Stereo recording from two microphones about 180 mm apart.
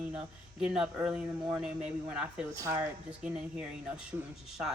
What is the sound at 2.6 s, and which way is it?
Speech, 15° right (ahead or behind).